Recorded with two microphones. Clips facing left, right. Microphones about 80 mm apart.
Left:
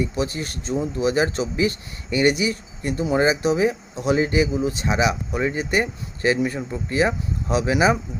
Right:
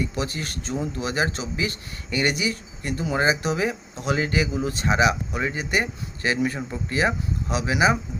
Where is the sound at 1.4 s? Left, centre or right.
Left.